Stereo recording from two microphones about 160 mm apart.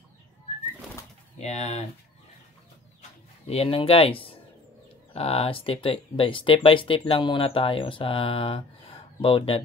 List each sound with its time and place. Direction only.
1.4 s speech: 40° left (ahead or behind)
3.4 s speech: 40° left (ahead or behind)